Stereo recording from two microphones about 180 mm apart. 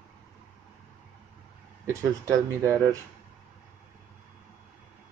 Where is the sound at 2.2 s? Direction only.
15° right (ahead or behind).